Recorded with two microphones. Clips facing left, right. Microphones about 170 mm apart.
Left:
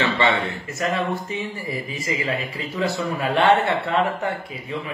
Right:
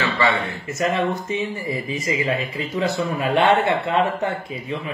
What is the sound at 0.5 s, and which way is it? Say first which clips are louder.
Speech: right 2 dB; 20° right (ahead or behind).